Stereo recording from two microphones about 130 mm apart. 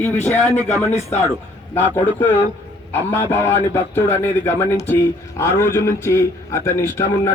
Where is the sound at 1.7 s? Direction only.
15° left (ahead or behind).